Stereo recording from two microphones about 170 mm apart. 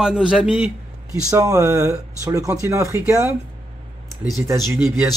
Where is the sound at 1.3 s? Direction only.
20° right (ahead or behind).